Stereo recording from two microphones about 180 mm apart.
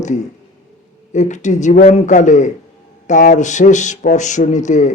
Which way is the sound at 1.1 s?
40° left (ahead or behind).